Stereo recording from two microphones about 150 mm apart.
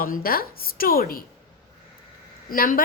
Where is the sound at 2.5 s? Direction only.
75° left (ahead or behind).